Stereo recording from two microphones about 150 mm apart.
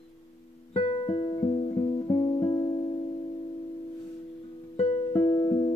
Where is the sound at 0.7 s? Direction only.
40° left (ahead or behind).